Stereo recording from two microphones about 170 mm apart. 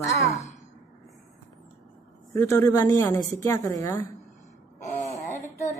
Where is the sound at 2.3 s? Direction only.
15° left (ahead or behind).